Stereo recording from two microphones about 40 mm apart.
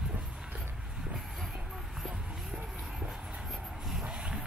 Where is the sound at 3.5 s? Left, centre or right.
Centre.